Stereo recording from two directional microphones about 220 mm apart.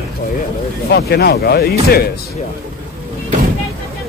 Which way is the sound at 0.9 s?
45° left (ahead or behind).